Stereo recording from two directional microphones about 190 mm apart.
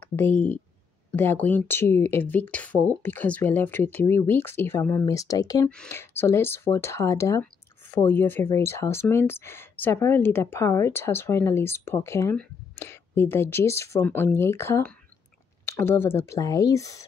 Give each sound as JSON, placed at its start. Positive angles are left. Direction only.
{"t": 0.0, "sound": "speech", "side_deg": 10}